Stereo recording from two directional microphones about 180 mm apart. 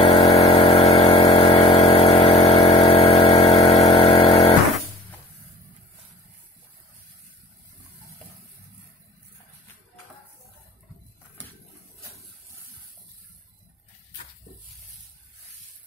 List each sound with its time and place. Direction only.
0.3 s vehicle: 35° left (ahead or behind)
1.3 s engine: 30° left (ahead or behind)